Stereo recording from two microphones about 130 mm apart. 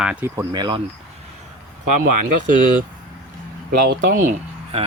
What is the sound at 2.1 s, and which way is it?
Speech, 75° right (ahead or behind).